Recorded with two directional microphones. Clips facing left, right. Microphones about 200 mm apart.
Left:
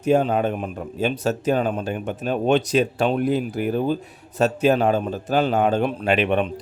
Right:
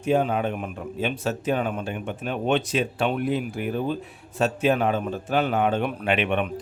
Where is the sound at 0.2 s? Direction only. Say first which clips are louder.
Left 3 dB; 35° left (ahead or behind).